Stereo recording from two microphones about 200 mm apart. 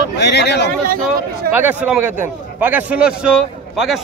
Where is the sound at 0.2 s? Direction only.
60° left (ahead or behind).